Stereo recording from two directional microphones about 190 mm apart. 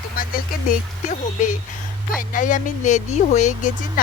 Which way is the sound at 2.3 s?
45° left (ahead or behind).